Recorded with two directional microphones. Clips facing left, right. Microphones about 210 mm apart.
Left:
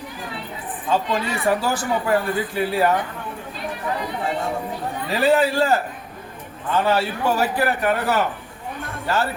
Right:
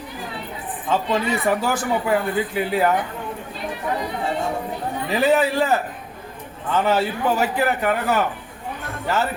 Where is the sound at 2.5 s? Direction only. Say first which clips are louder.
Left 2 dB; 20° right (ahead or behind).